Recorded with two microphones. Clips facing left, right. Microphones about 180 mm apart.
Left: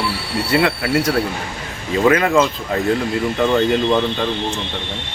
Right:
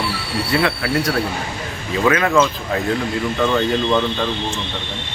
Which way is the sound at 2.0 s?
15° left (ahead or behind).